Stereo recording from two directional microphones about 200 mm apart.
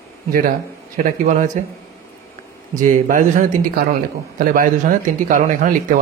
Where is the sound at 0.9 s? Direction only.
40° right (ahead or behind).